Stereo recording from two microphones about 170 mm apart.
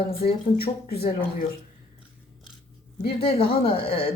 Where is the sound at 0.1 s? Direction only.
35° left (ahead or behind).